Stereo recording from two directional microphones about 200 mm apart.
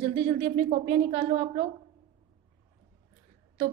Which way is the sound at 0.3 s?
35° right (ahead or behind).